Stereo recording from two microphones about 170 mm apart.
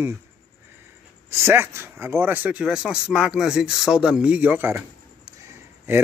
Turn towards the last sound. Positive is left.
turn(degrees=-10)  # may be behind; listen again after turning